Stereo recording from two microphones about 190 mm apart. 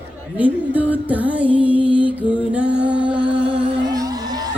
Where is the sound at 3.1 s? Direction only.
25° right (ahead or behind).